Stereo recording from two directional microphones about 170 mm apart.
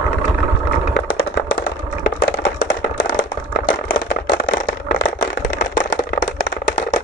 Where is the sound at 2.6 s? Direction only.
50° left (ahead or behind).